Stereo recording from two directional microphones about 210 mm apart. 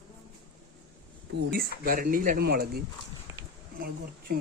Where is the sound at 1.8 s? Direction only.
40° right (ahead or behind).